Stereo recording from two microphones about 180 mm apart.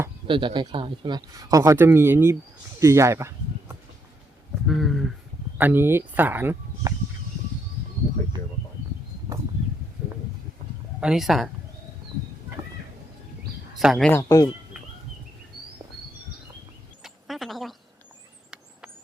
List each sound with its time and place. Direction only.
0.3 s speech: 25° right (ahead or behind)
2.8 s a sound: 15° right (ahead or behind)
4.6 s speech: centre (ahead or behind)
5.5 s speech: 10° right (ahead or behind)
11.0 s speech: centre (ahead or behind)
13.7 s speech: centre (ahead or behind)
14.1 s speech: 20° left (ahead or behind)
17.0 s a sound: centre (ahead or behind)